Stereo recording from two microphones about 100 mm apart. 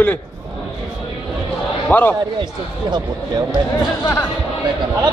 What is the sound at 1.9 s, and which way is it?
Speech, 20° left (ahead or behind).